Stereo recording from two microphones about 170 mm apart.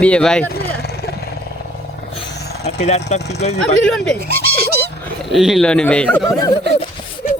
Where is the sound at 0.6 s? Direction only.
70° left (ahead or behind).